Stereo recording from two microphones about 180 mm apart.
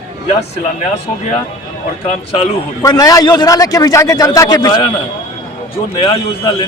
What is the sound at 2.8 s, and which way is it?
A man's voice, 20° left (ahead or behind).